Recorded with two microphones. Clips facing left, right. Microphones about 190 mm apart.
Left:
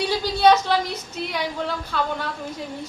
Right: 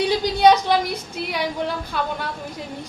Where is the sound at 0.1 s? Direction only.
15° right (ahead or behind).